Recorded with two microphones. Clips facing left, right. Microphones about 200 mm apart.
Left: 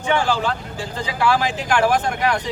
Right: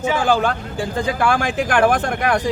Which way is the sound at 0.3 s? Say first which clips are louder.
Right 4 dB; 50° right (ahead or behind).